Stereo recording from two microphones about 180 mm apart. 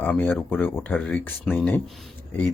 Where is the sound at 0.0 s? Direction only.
10° left (ahead or behind).